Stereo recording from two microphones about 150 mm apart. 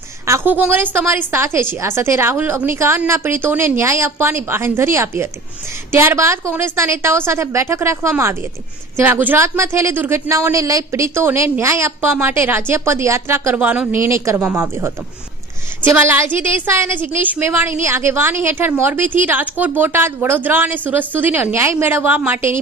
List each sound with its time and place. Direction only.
0.3 s a woman's voice: 15° right (ahead or behind)